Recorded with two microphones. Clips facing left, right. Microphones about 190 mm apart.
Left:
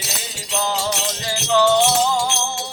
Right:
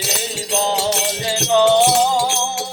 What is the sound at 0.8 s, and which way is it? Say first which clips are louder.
Music: right 4 dB; 25° right (ahead or behind).